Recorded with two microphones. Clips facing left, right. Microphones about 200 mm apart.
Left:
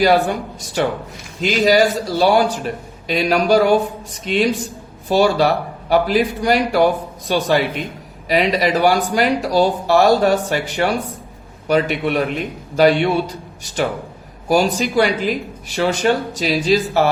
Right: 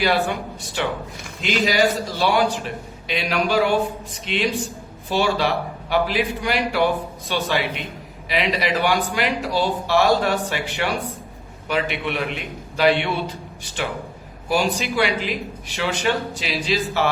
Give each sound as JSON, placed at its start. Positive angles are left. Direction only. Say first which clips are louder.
{"t": 0.0, "sound": "a man's voice", "louder": "left 6 dB", "side_deg": 40}
{"t": 14.4, "sound": "a man's voice", "louder": "left 5 dB", "side_deg": 40}